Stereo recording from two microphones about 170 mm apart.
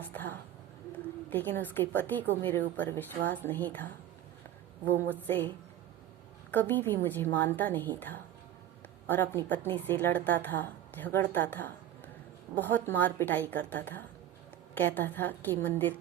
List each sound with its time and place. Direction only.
0.1 s a woman's voice: 10° left (ahead or behind)
5.2 s a woman's voice: 10° left (ahead or behind)
6.5 s a woman's voice: 10° left (ahead or behind)